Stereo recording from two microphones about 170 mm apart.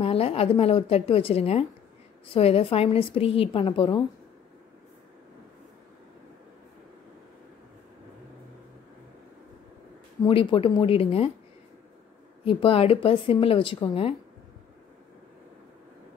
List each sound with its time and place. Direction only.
0.0 s a woman's voice: 35° left (ahead or behind)
10.2 s a woman's voice: 30° left (ahead or behind)
12.4 s a woman's voice: 35° left (ahead or behind)